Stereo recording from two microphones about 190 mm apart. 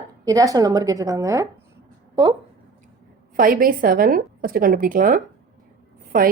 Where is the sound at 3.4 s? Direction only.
50° right (ahead or behind).